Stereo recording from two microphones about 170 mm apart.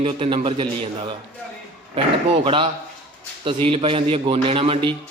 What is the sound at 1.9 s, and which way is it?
A man's voice, 30° right (ahead or behind).